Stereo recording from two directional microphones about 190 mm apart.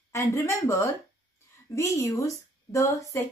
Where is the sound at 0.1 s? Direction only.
15° left (ahead or behind).